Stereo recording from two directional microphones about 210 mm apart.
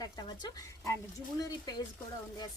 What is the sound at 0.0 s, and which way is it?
Speech, 20° left (ahead or behind).